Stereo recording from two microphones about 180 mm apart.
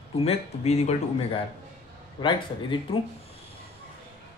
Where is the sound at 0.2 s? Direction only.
35° left (ahead or behind).